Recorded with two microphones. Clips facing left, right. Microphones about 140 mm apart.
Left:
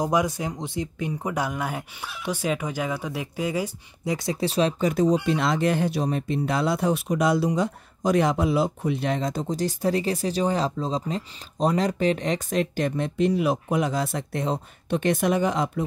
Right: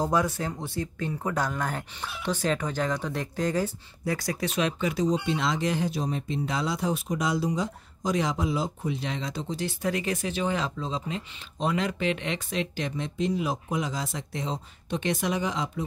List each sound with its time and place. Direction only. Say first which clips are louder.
0.0 s speech: left 2 dB; 15° left (ahead or behind); by 5.0 s 40° left (ahead or behind)
5.0 s speech: left 4 dB; 60° left (ahead or behind)